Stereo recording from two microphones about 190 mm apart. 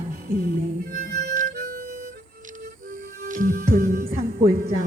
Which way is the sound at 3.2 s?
45° right (ahead or behind).